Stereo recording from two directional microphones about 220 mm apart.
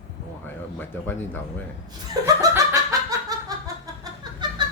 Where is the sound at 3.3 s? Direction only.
15° right (ahead or behind).